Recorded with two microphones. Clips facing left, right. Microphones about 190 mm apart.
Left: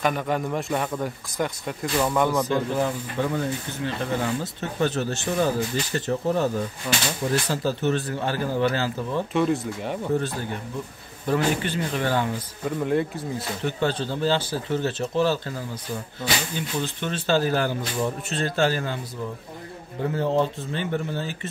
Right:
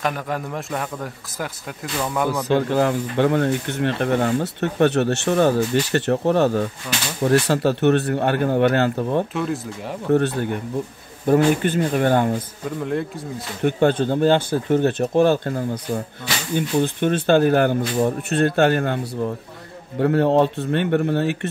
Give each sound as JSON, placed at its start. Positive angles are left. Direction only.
{"t": 0.0, "sound": "a man's voice", "side_deg": 0}
{"t": 2.4, "sound": "speech", "side_deg": -75}
{"t": 6.9, "sound": "speech", "side_deg": 5}
{"t": 7.2, "sound": "speech", "side_deg": -70}
{"t": 9.3, "sound": "a man's voice", "side_deg": 0}
{"t": 10.1, "sound": "speech", "side_deg": -60}
{"t": 11.2, "sound": "speech", "side_deg": -50}
{"t": 12.8, "sound": "a man's voice", "side_deg": 0}
{"t": 13.6, "sound": "speech", "side_deg": -55}